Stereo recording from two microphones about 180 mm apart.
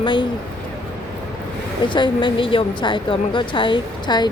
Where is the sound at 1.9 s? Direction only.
25° left (ahead or behind).